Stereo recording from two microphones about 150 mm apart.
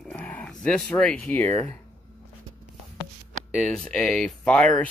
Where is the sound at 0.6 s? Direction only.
5° left (ahead or behind).